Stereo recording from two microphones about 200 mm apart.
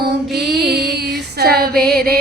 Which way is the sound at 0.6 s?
55° right (ahead or behind).